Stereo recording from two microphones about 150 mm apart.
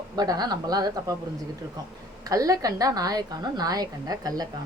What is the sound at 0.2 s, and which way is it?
Speech, 25° right (ahead or behind).